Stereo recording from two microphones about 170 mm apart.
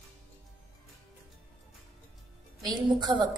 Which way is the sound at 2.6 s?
25° right (ahead or behind).